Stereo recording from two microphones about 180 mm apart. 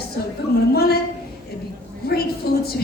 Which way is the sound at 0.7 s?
60° left (ahead or behind).